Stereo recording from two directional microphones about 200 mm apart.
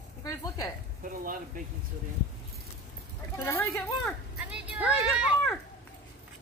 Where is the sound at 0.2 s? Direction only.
20° left (ahead or behind).